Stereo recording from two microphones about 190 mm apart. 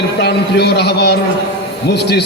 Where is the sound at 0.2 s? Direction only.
60° left (ahead or behind).